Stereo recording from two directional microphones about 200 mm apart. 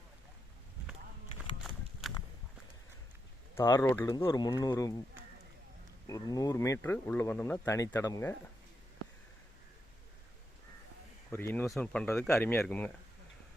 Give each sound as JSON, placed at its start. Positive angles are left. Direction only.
{"t": 1.6, "sound": "horse", "side_deg": 0}
{"t": 3.5, "sound": "speech", "side_deg": 15}
{"t": 6.1, "sound": "speech", "side_deg": 15}
{"t": 11.3, "sound": "speech", "side_deg": 10}